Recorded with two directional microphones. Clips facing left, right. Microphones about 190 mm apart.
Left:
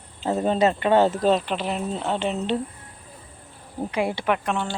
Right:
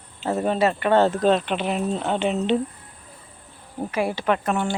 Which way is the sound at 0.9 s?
10° left (ahead or behind).